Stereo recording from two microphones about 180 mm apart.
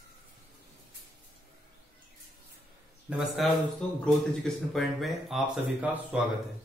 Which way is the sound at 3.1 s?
Centre (ahead or behind).